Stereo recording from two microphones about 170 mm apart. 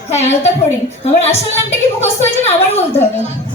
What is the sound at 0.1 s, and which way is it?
Speech, 40° left (ahead or behind).